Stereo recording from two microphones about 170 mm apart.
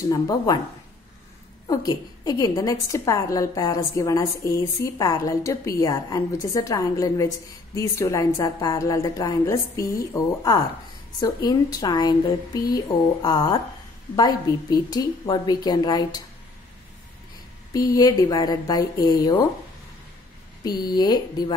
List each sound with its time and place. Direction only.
0.1 s a woman's voice: 25° left (ahead or behind)
1.7 s a woman's voice: 20° left (ahead or behind)
17.7 s a woman's voice: 20° left (ahead or behind)
20.6 s a woman's voice: 25° left (ahead or behind)